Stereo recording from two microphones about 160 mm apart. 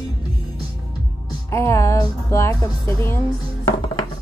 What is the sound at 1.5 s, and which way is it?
Speech, 15° left (ahead or behind).